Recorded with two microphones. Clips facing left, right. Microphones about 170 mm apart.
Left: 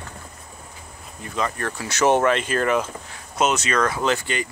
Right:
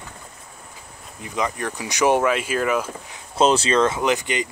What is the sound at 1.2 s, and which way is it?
Speech, 15° right (ahead or behind).